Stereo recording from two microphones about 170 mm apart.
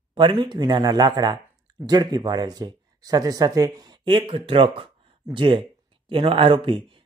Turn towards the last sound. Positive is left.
turn(degrees=-30)  # may be behind; listen again after turning